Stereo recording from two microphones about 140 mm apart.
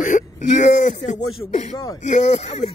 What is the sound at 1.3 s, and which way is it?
Speech, 40° left (ahead or behind).